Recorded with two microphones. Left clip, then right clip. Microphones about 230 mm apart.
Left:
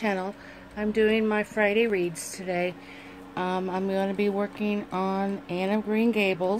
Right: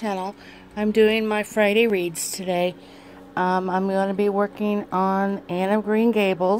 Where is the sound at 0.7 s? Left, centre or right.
Right.